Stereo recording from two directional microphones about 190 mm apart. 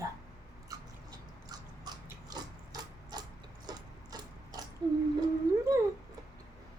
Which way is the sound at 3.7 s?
20° right (ahead or behind).